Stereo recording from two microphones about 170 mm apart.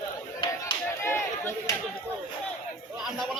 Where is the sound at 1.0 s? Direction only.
15° left (ahead or behind).